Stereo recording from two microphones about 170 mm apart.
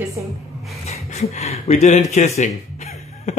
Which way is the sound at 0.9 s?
40° left (ahead or behind).